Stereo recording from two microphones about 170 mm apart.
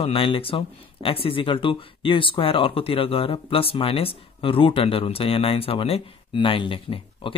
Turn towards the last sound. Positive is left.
turn(degrees=30)  # may be behind; listen again after turning